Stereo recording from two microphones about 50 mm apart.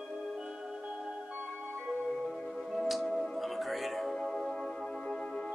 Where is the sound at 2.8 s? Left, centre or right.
Centre.